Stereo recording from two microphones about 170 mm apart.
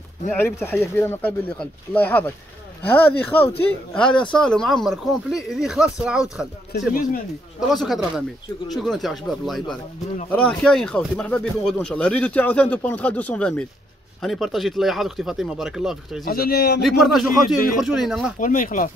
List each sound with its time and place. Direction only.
0.3 s speech: 10° left (ahead or behind)
6.9 s speech: 55° left (ahead or behind)
7.7 s speech: centre (ahead or behind)
16.3 s speech: 65° left (ahead or behind)
16.8 s speech: centre (ahead or behind)
18.4 s speech: 50° left (ahead or behind)